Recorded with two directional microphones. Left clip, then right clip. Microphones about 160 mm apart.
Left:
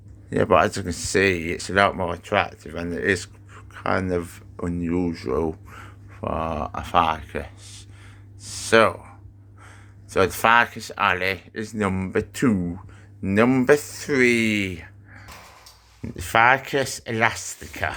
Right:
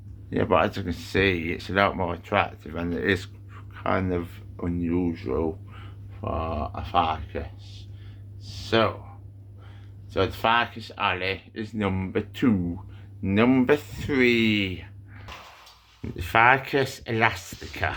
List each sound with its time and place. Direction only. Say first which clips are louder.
0.3 s speech: left 4 dB; 35° left (ahead or behind); by 8.9 s 80° left
10.1 s speech: left 5 dB; 65° left (ahead or behind); by 14.8 s 35° left (ahead or behind)
16.0 s speech: left 2 dB; 10° left (ahead or behind)